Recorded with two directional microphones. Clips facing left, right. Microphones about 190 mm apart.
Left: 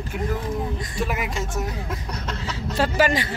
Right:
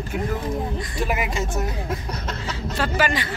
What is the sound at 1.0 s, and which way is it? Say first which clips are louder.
Speech: right 2 dB; 5° right (ahead or behind).